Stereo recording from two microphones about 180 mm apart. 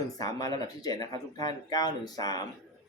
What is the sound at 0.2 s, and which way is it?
Speech, 20° left (ahead or behind).